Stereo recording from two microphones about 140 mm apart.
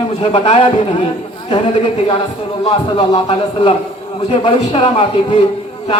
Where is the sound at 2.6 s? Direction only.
45° left (ahead or behind).